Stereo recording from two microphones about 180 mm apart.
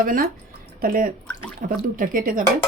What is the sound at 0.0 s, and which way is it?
Speech, 50° right (ahead or behind).